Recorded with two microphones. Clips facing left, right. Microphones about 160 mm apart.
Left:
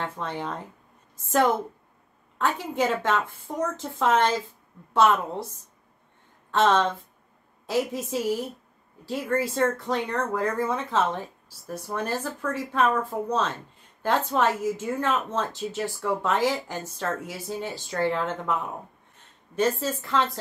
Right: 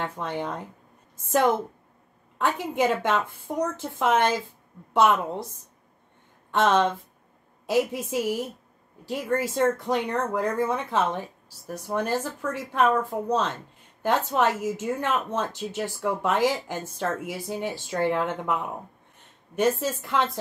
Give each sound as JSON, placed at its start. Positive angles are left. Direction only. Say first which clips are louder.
{"t": 0.0, "sound": "speech", "louder": "right 1 dB", "side_deg": -15}
{"t": 2.3, "sound": "speech", "louder": "right 1 dB", "side_deg": -15}
{"t": 6.5, "sound": "speech", "louder": "even", "side_deg": -15}
{"t": 14.0, "sound": "speech", "louder": "even", "side_deg": -15}